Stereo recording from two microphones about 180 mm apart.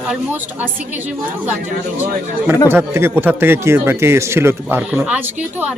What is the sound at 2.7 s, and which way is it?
Speech, 15° right (ahead or behind).